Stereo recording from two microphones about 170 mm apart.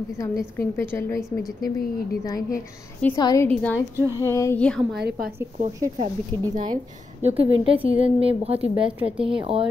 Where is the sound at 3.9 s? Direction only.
15° right (ahead or behind).